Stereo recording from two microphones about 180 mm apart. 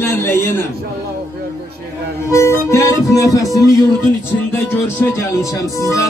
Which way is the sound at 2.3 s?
15° left (ahead or behind).